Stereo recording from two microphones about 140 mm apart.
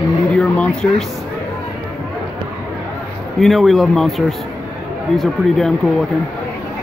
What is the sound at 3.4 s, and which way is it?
Speech, centre (ahead or behind).